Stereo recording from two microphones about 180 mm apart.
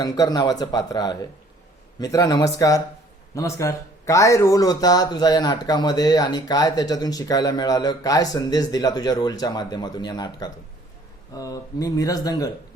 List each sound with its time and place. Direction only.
0.0 s speech: 20° left (ahead or behind)